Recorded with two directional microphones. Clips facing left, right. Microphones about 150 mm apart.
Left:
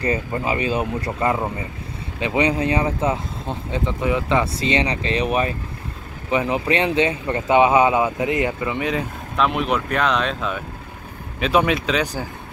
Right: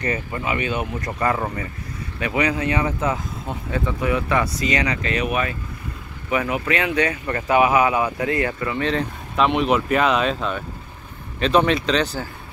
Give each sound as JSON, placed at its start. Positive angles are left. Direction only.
{"t": 0.0, "sound": "speech", "side_deg": 30}
{"t": 1.3, "sound": "speech", "side_deg": 20}
{"t": 9.4, "sound": "speech", "side_deg": 0}